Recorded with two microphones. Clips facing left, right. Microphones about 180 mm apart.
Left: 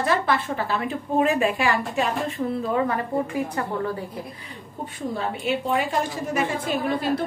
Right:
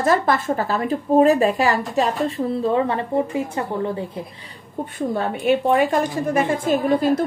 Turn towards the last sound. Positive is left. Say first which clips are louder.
# right 6 dB
turn(degrees=-45)  # may be behind; listen again after turning